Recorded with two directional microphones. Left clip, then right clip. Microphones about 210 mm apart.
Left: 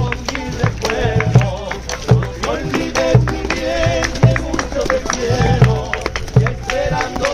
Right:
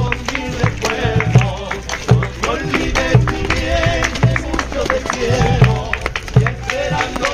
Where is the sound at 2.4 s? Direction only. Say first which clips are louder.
Right 2 dB; 40° right (ahead or behind).